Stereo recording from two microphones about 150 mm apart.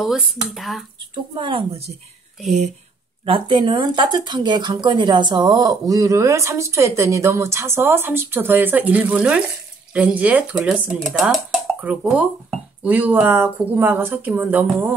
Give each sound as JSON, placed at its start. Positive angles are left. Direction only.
{"t": 0.0, "sound": "speech", "side_deg": 0}
{"t": 1.1, "sound": "a woman's voice", "side_deg": -30}
{"t": 3.3, "sound": "speech", "side_deg": -35}